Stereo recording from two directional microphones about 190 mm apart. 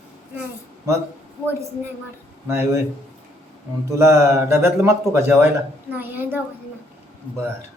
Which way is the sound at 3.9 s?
15° right (ahead or behind).